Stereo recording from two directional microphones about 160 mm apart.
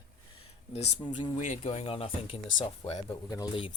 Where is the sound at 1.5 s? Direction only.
40° left (ahead or behind).